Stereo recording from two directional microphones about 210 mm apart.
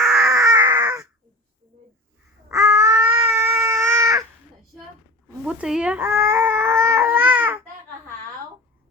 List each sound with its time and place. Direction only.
0.0 s a sound: centre (ahead or behind)
0.5 s baby cry: 15° right (ahead or behind)
2.5 s baby cry: 15° right (ahead or behind)
5.5 s baby cry: 5° right (ahead or behind)